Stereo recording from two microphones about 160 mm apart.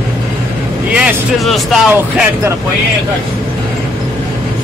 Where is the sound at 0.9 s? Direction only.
5° right (ahead or behind).